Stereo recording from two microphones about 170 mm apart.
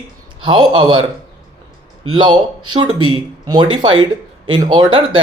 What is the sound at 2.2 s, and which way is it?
Speech, 25° right (ahead or behind).